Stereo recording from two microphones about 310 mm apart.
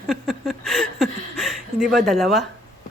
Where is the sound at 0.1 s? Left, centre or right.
Centre.